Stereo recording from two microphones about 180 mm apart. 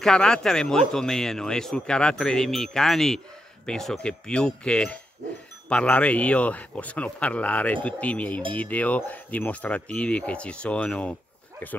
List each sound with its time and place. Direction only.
0.0 s speech: 5° left (ahead or behind)